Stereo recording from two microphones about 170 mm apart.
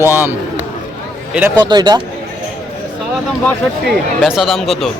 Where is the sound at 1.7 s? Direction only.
25° right (ahead or behind).